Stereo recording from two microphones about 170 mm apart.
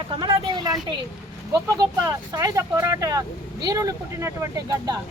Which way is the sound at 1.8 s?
20° right (ahead or behind).